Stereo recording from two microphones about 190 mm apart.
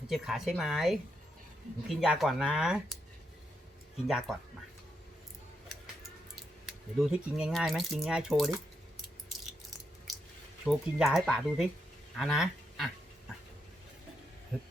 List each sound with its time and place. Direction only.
0.1 s speech: centre (ahead or behind)
4.0 s speech: centre (ahead or behind)
7.0 s speech: 5° right (ahead or behind)
10.7 s speech: centre (ahead or behind)
14.5 s a sound: 5° right (ahead or behind)